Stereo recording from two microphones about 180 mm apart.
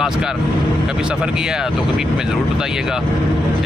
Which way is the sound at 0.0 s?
Centre (ahead or behind).